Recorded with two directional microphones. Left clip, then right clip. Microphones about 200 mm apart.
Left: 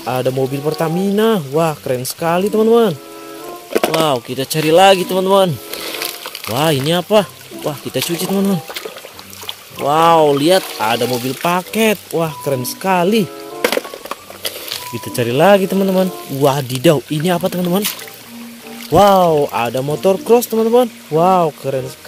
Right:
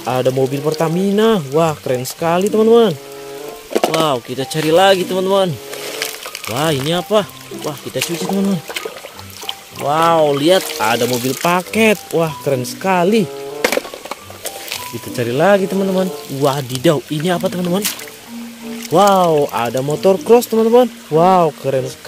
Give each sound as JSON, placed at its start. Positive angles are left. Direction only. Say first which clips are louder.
{"t": 0.0, "sound": "speech", "louder": "right 2 dB", "side_deg": 0}
{"t": 3.7, "sound": "a sound", "louder": "even", "side_deg": 20}
{"t": 4.0, "sound": "speech", "louder": "left 1 dB", "side_deg": 10}
{"t": 9.8, "sound": "speech", "louder": "left 2 dB", "side_deg": 15}
{"t": 10.8, "sound": "speech", "louder": "right 1 dB", "side_deg": 0}
{"t": 13.6, "sound": "music", "louder": "even", "side_deg": 15}
{"t": 15.1, "sound": "speech", "louder": "left 2 dB", "side_deg": 10}
{"t": 18.9, "sound": "speech", "louder": "left 1 dB", "side_deg": 10}